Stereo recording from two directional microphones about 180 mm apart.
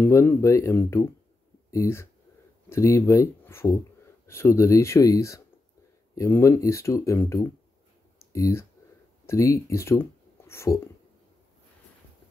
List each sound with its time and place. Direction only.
0.0 s speech: 15° left (ahead or behind)
8.2 s clicking: 15° left (ahead or behind)
9.2 s speech: 15° left (ahead or behind)